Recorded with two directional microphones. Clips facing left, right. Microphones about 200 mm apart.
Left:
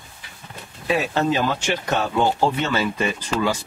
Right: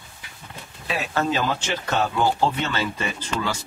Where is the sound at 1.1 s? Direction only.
15° left (ahead or behind).